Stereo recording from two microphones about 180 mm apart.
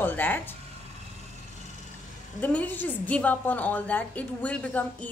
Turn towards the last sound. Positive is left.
turn(degrees=5)  # may be behind; listen again after turning